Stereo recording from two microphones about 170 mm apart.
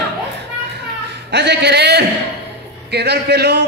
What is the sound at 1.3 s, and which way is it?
A man's voice, 80° right.